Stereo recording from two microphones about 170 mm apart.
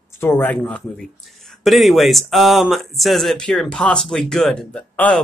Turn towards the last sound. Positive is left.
turn(degrees=5)  # may be behind; listen again after turning